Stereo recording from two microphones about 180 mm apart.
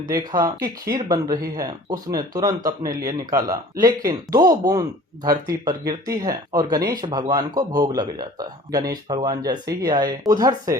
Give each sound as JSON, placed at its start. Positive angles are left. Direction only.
{"t": 0.1, "sound": "speech", "side_deg": -20}